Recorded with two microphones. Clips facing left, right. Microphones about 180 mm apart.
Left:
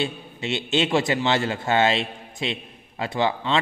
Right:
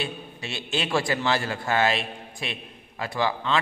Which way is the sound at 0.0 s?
25° left (ahead or behind).